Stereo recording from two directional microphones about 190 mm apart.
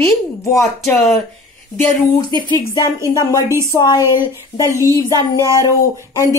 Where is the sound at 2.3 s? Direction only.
25° right (ahead or behind).